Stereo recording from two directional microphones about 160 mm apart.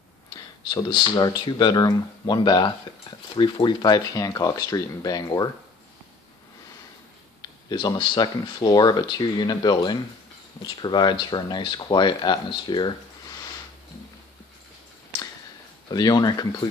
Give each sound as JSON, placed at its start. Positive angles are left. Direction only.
{"t": 0.3, "sound": "speech", "side_deg": 25}
{"t": 7.7, "sound": "speech", "side_deg": 30}
{"t": 15.9, "sound": "speech", "side_deg": 25}